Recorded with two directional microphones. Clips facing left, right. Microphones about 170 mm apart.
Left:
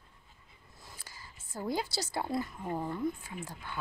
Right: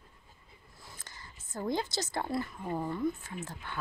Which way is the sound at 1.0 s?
10° left (ahead or behind).